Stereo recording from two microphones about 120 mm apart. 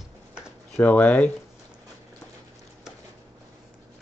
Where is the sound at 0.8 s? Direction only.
15° left (ahead or behind).